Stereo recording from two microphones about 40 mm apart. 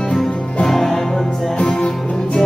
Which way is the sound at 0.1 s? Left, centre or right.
Centre.